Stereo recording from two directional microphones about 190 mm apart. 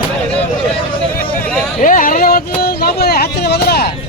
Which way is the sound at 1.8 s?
45° left (ahead or behind).